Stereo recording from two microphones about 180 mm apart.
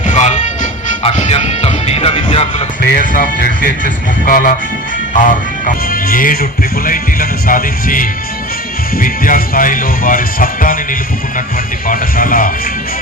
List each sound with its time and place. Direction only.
0.0 s music: 40° left (ahead or behind)
2.8 s speech: 55° left (ahead or behind)
11.9 s speech: 50° left (ahead or behind)